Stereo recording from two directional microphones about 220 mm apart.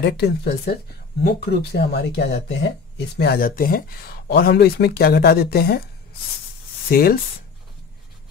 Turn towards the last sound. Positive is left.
turn(degrees=40)  # may be behind; listen again after turning